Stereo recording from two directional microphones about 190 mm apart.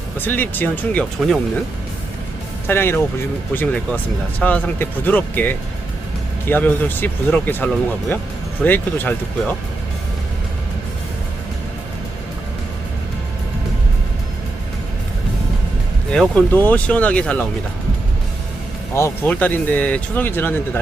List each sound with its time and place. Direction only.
0.2 s speech: 10° left (ahead or behind)
2.6 s speech: 10° left (ahead or behind)
16.1 s speech: 5° left (ahead or behind)
18.9 s speech: 10° left (ahead or behind)